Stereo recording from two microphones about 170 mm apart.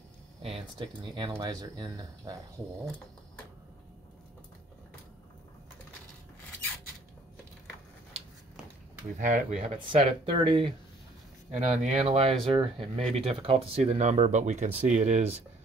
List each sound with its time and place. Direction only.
0.4 s speech: 35° right (ahead or behind)
9.2 s speech: 45° right (ahead or behind)
11.5 s speech: 45° right (ahead or behind)